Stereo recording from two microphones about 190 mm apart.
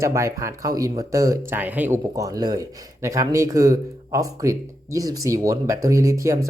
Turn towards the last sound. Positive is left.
turn(degrees=-15)  # may be behind; listen again after turning